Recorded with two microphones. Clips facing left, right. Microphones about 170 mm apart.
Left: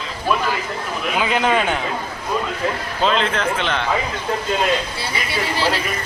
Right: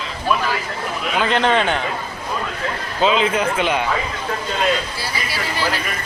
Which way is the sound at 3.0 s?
5° right (ahead or behind).